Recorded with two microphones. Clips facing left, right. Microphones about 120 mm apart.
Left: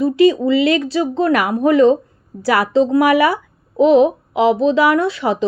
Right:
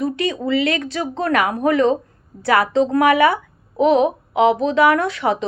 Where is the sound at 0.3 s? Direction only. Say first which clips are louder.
Left 5 dB; 5° left (ahead or behind).